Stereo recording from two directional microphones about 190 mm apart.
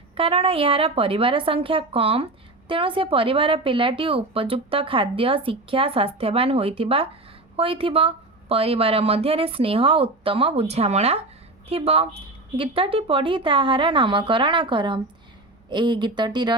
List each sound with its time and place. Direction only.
0.2 s a woman's voice: 30° right (ahead or behind)